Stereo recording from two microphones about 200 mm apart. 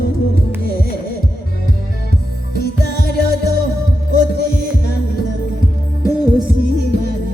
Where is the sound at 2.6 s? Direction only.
50° left (ahead or behind).